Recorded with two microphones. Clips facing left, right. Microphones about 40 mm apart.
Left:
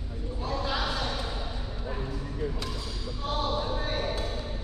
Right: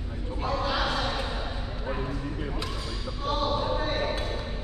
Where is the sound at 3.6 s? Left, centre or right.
Centre.